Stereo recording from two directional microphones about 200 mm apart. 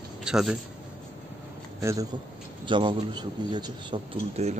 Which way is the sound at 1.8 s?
15° right (ahead or behind).